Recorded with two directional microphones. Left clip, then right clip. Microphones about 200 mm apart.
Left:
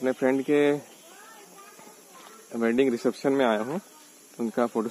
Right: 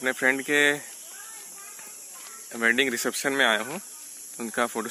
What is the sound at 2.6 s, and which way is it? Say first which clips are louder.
Speech: right 1 dB; centre (ahead or behind).